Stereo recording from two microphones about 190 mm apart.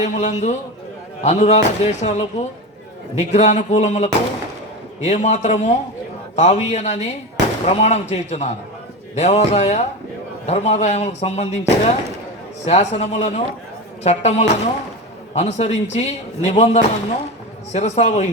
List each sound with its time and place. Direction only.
0.0 s a man's voice: 35° left (ahead or behind)